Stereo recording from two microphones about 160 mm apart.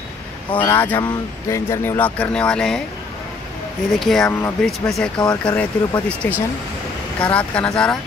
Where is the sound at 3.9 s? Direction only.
Centre (ahead or behind).